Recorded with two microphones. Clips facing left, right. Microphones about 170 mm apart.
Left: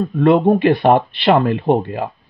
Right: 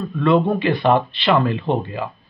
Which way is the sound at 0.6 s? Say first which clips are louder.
Left 4 dB; 55° left (ahead or behind).